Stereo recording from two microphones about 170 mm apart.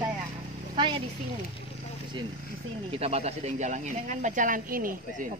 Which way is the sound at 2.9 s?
40° right (ahead or behind).